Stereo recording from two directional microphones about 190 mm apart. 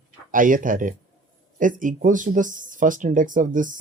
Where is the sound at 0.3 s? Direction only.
45° right (ahead or behind).